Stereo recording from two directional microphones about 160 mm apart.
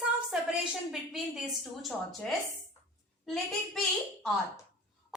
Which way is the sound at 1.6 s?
Centre (ahead or behind).